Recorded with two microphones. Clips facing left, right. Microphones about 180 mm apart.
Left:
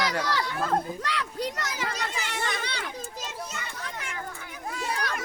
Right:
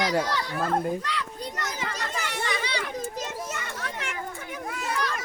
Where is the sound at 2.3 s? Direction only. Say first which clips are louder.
Right 2 dB; 55° left (ahead or behind).